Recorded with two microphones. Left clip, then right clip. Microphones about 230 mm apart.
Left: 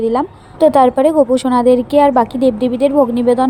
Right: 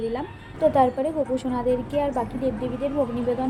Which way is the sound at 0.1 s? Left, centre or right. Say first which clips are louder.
Left 13 dB; left.